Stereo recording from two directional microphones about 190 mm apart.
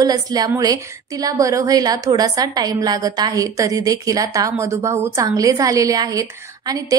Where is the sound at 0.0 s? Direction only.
20° right (ahead or behind).